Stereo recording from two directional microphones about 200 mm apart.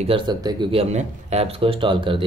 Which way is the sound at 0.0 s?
25° right (ahead or behind).